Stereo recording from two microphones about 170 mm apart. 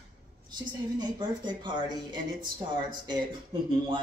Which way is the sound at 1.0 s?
25° right (ahead or behind).